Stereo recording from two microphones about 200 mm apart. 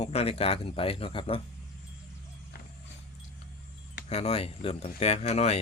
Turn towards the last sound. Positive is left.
turn(degrees=30)  # may be behind; listen again after turning